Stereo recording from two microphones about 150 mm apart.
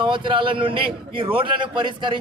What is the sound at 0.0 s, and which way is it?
A man's voice, 35° right (ahead or behind).